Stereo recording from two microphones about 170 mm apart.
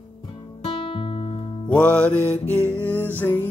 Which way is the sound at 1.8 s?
5° left (ahead or behind).